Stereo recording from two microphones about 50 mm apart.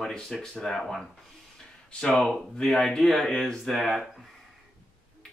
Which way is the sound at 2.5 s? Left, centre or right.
Centre.